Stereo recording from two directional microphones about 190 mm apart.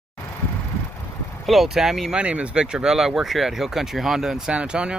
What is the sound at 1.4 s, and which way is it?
Speech, centre (ahead or behind).